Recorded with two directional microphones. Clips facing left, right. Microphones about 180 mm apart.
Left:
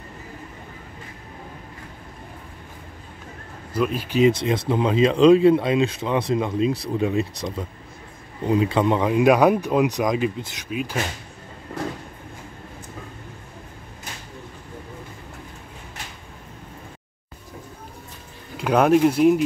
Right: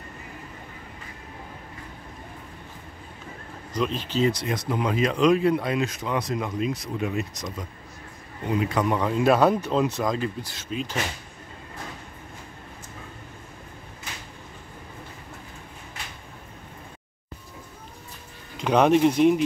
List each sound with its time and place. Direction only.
3.7 s speech: 10° left (ahead or behind)
4.3 s speech: 25° left (ahead or behind); by 11.1 s 10° left (ahead or behind)
18.6 s speech: 5° left (ahead or behind)